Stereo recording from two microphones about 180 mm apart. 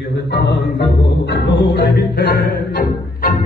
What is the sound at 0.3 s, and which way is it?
Speech, 70° left (ahead or behind).